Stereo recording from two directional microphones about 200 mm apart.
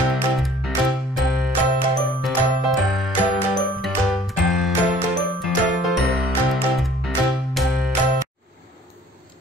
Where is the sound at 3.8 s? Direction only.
Centre (ahead or behind).